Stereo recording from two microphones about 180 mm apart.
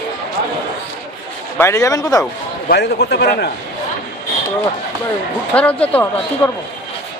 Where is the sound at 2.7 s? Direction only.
65° left (ahead or behind).